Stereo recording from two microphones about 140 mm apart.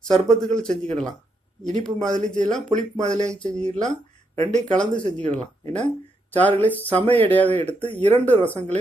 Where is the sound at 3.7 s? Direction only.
55° right (ahead or behind).